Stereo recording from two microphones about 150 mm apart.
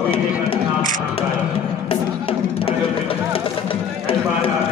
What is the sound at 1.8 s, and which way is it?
Music, 35° left (ahead or behind).